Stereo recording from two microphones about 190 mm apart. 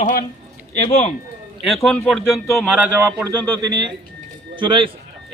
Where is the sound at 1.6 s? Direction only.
Centre (ahead or behind).